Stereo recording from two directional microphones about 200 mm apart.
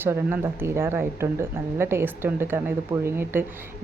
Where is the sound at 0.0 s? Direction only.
10° right (ahead or behind).